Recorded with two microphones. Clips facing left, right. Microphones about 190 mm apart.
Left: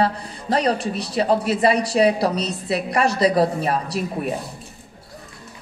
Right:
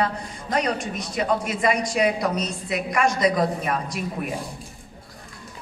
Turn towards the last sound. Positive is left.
turn(degrees=35)  # may be behind; listen again after turning